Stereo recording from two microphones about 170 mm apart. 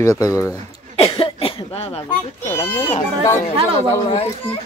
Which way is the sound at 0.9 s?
35° left (ahead or behind).